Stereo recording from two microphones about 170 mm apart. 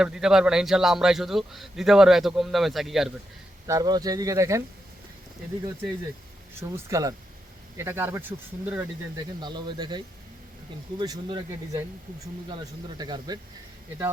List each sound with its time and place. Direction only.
0.0 s a man's voice: 5° right (ahead or behind)
3.7 s speech: 20° right (ahead or behind)
6.6 s speech: 15° right (ahead or behind)
9.1 s speech: 25° right (ahead or behind)
13.0 s speech: 25° right (ahead or behind)